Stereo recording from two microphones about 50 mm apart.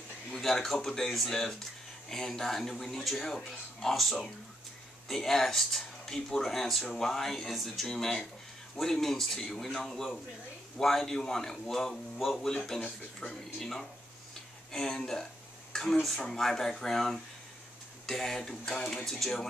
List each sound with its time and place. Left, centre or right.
0.3 s a man's voice: centre
12.8 s speech: left
13.6 s a man's voice: centre